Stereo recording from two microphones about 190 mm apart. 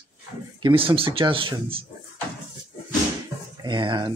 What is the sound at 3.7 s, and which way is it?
Speech, 25° right (ahead or behind).